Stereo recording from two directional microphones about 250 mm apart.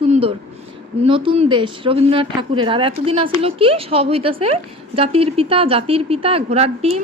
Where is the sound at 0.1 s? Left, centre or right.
Right.